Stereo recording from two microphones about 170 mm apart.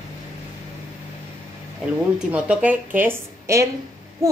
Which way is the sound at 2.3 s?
10° right (ahead or behind).